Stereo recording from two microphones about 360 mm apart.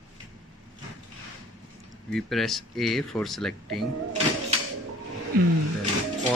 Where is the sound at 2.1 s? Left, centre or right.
Centre.